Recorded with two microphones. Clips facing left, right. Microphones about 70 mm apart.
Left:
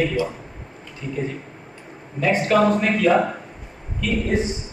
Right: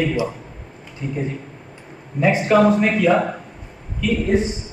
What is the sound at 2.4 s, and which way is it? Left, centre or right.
Speech, centre.